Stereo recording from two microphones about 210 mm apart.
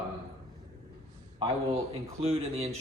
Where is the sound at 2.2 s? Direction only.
30° right (ahead or behind).